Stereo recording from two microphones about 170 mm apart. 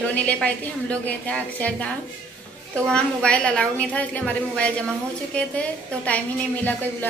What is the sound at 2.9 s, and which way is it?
A woman's voice, 5° left (ahead or behind).